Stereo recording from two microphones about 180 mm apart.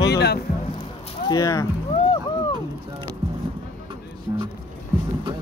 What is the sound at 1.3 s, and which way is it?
Speech, 20° left (ahead or behind).